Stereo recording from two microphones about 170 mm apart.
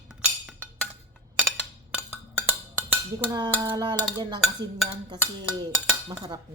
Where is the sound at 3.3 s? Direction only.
25° right (ahead or behind).